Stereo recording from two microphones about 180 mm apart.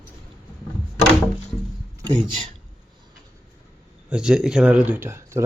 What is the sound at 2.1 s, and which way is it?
Speech, 25° right (ahead or behind).